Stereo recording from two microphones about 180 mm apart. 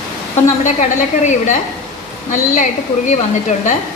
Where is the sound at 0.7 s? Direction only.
40° left (ahead or behind).